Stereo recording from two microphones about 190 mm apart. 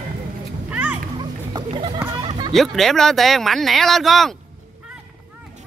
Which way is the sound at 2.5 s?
Centre (ahead or behind).